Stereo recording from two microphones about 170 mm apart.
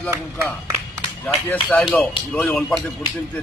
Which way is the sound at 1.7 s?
10° left (ahead or behind).